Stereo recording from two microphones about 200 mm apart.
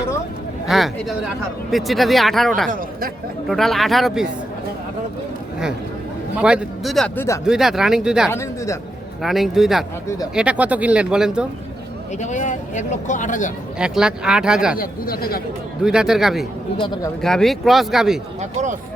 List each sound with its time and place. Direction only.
0.7 s speech: centre (ahead or behind)
6.4 s speech: 5° right (ahead or behind)
8.3 s speech: 15° left (ahead or behind)
9.2 s speech: centre (ahead or behind)
12.2 s speech: 40° left (ahead or behind)
13.7 s speech: 5° right (ahead or behind)
14.8 s speech: 45° left (ahead or behind)
15.8 s speech: 5° right (ahead or behind)
16.7 s speech: 25° left (ahead or behind)
17.2 s speech: centre (ahead or behind)